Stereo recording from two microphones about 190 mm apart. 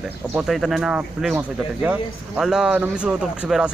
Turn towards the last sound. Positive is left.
turn(degrees=-5)  # may be behind; listen again after turning